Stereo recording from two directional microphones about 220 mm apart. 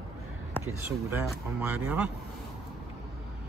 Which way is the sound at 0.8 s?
10° right (ahead or behind).